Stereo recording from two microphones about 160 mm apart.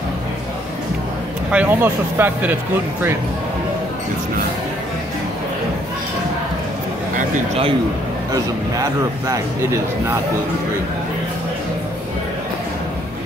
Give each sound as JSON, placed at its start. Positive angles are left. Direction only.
{"t": 1.5, "sound": "speech", "side_deg": -10}